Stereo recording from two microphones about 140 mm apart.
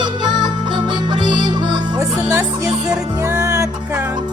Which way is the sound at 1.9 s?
20° right (ahead or behind).